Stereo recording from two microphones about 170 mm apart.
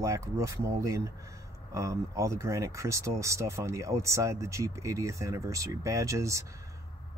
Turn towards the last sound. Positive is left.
turn(degrees=-15)  # may be behind; listen again after turning